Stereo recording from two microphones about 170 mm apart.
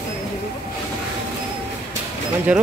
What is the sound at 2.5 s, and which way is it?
Speech, 5° right (ahead or behind).